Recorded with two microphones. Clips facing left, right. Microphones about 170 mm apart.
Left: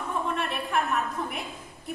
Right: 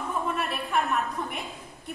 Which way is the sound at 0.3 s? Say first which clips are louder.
Even; centre (ahead or behind).